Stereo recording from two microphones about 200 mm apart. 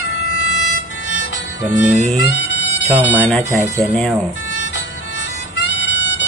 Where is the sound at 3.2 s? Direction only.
5° left (ahead or behind).